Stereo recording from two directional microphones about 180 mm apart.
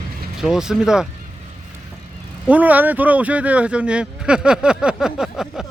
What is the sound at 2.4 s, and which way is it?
Speech, 10° right (ahead or behind).